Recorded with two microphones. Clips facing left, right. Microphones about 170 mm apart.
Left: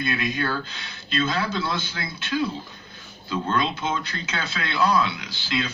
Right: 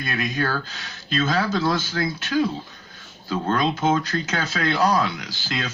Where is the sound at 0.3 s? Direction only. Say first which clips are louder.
Right 2 dB; 40° right (ahead or behind).